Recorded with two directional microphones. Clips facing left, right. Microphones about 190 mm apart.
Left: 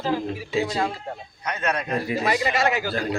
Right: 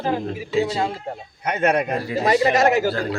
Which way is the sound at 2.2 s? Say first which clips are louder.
Right 8 dB; 40° right (ahead or behind).